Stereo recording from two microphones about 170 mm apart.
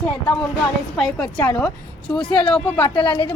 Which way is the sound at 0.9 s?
5° left (ahead or behind).